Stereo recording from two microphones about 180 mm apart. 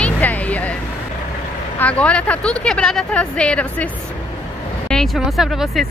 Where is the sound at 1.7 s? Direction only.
5° left (ahead or behind).